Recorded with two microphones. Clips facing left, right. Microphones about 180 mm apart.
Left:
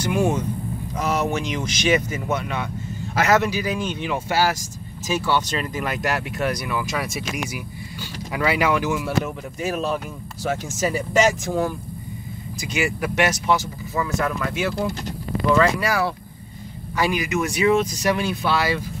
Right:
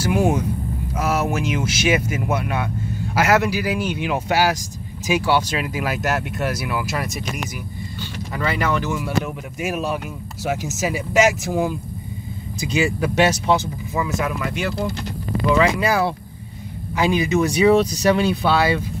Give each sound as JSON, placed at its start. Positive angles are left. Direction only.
{"t": 0.0, "sound": "vehicle", "side_deg": -10}
{"t": 0.9, "sound": "speech", "side_deg": -5}
{"t": 8.3, "sound": "speech", "side_deg": 10}
{"t": 9.6, "sound": "speech", "side_deg": -10}
{"t": 12.7, "sound": "speech", "side_deg": -30}
{"t": 13.9, "sound": "speech", "side_deg": -10}
{"t": 14.5, "sound": "speech", "side_deg": 0}
{"t": 15.8, "sound": "speech", "side_deg": -20}